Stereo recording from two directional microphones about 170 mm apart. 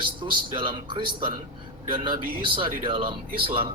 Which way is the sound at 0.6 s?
30° right (ahead or behind).